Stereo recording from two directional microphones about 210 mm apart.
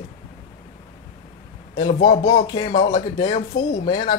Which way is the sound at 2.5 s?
20° left (ahead or behind).